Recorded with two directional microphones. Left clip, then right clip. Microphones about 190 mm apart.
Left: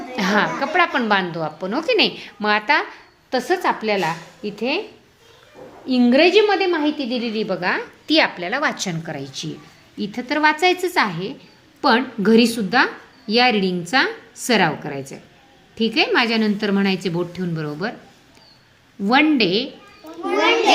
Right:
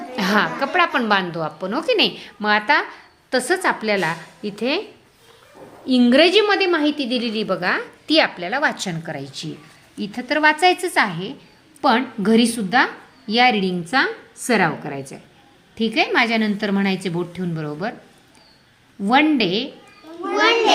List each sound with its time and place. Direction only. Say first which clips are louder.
0.2 s a woman's voice: even; 10° right (ahead or behind)
3.2 s a woman's voice: even; 10° right (ahead or behind)
5.8 s a woman's voice: right 1 dB; 15° right (ahead or behind)
19.0 s a woman's voice: even; 5° right (ahead or behind)